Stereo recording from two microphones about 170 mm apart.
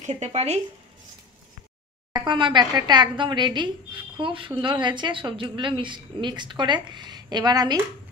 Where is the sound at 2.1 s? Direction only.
30° right (ahead or behind).